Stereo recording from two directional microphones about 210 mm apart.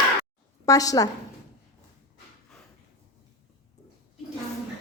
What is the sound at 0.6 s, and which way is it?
Speech, 15° left (ahead or behind).